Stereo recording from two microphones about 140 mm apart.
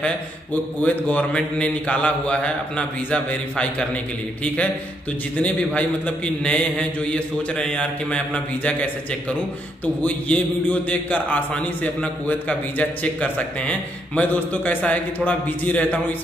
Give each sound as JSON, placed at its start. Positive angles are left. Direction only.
{"t": 0.0, "sound": "a man's voice", "side_deg": 10}
{"t": 5.4, "sound": "a man's voice", "side_deg": 10}
{"t": 10.0, "sound": "a man's voice", "side_deg": 10}